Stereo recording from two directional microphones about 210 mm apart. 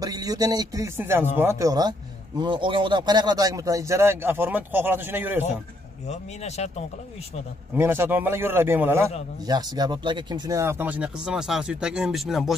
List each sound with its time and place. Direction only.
0.0 s speech: 20° right (ahead or behind)
6.0 s speech: 30° left (ahead or behind)
7.7 s speech: 10° right (ahead or behind)